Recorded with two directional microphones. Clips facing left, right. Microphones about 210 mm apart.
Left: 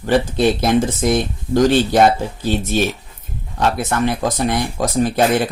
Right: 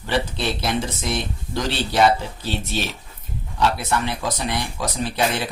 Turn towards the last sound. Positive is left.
turn(degrees=45)  # may be behind; listen again after turning